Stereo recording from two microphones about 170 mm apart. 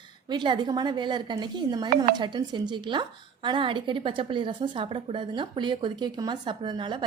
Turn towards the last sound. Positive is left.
turn(degrees=-30)  # may be behind; listen again after turning